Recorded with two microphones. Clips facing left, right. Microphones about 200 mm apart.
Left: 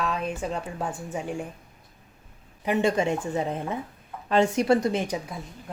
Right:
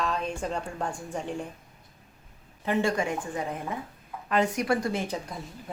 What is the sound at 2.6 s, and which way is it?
A woman's voice, 20° left (ahead or behind).